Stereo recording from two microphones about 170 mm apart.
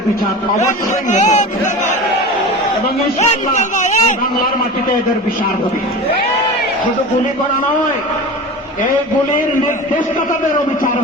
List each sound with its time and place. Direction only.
1.1 s a man's voice: 45° left (ahead or behind)
3.2 s a man's voice: 45° left (ahead or behind)